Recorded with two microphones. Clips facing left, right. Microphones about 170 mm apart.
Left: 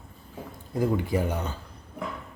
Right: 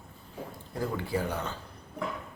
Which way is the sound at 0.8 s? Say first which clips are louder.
Left 6 dB; 15° left (ahead or behind).